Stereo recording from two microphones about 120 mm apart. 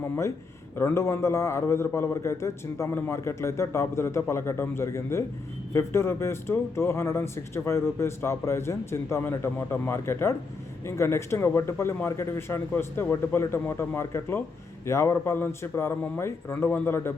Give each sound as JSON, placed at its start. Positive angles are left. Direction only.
{"t": 0.8, "sound": "speech", "side_deg": 20}